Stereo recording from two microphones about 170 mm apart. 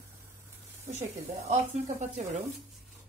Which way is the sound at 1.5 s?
45° right (ahead or behind).